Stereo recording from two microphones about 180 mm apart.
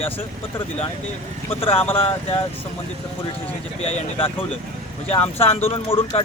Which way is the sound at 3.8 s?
30° left (ahead or behind).